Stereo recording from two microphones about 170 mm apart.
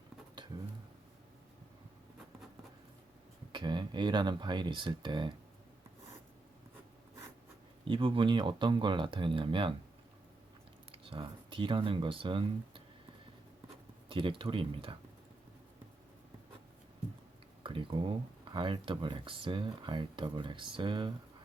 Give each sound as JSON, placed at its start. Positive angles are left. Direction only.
{"t": 3.5, "sound": "speech", "side_deg": -25}
{"t": 7.9, "sound": "speech", "side_deg": -30}
{"t": 10.9, "sound": "speech", "side_deg": -30}
{"t": 14.1, "sound": "speech", "side_deg": -30}
{"t": 17.6, "sound": "speech", "side_deg": -30}